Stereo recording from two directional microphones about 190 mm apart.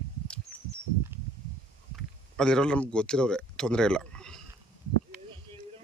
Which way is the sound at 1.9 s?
5° left (ahead or behind).